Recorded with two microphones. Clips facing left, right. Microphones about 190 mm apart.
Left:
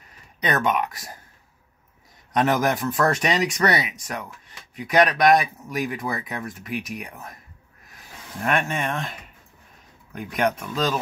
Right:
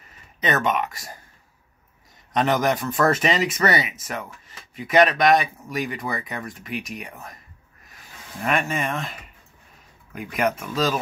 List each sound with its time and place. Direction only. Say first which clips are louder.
0.4 s speech: even; centre (ahead or behind)
2.3 s speech: even; 5° left (ahead or behind)
8.5 s speech: even; centre (ahead or behind)
10.1 s speech: even; 5° right (ahead or behind)